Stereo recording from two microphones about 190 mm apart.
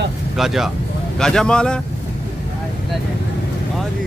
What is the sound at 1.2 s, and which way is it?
Speech, 5° left (ahead or behind).